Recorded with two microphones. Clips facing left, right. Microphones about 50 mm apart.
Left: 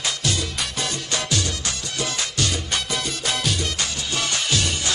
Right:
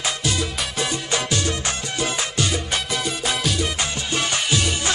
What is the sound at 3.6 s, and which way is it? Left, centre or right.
Music, right.